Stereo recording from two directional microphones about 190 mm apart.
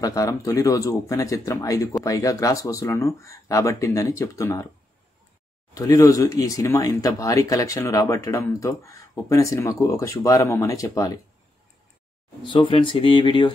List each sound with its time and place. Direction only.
0.0 s speech: 15° left (ahead or behind)
5.8 s speech: 15° left (ahead or behind)
12.4 s speech: 25° left (ahead or behind)